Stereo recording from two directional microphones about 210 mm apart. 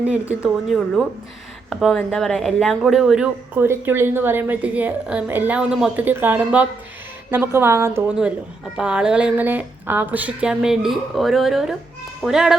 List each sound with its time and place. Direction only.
0.0 s speech: 5° right (ahead or behind)